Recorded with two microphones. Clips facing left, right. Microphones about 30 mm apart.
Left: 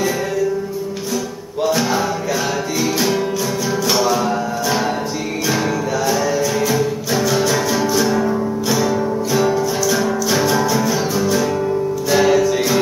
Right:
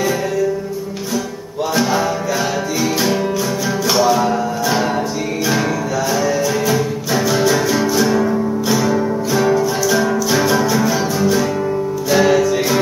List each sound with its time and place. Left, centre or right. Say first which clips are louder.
2.8 s music: right 1 dB; centre
6.1 s music: right 1 dB; centre